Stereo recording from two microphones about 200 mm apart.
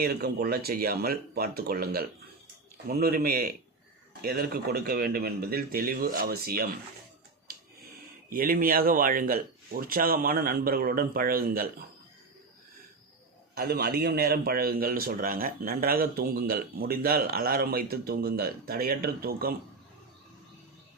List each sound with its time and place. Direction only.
0.0 s a man's voice: 50° right (ahead or behind)
8.3 s a man's voice: 45° right (ahead or behind)
13.6 s a man's voice: 50° right (ahead or behind)